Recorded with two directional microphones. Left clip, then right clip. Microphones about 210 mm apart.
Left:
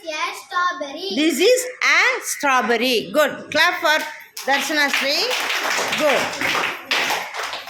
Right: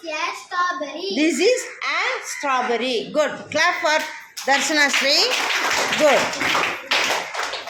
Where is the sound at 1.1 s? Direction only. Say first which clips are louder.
Left 2 dB; 10° left (ahead or behind).